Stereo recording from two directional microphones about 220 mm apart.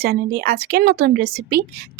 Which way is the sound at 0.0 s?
45° right (ahead or behind).